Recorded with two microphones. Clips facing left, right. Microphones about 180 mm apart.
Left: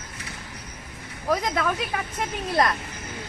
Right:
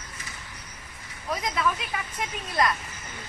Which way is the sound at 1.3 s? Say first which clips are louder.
Left 4 dB; 55° left (ahead or behind).